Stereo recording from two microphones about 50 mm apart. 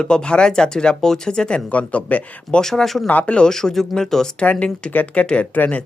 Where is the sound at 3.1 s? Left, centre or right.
Left.